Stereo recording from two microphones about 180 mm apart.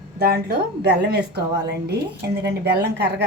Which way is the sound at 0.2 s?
60° right (ahead or behind).